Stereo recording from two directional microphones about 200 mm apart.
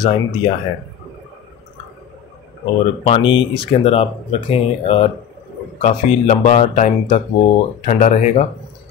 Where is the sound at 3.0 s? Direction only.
25° left (ahead or behind).